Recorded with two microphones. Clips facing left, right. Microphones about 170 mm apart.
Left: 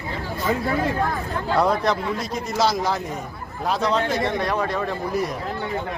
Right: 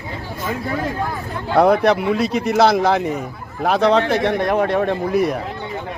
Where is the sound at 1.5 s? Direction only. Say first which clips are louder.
Right 7 dB; 65° right (ahead or behind).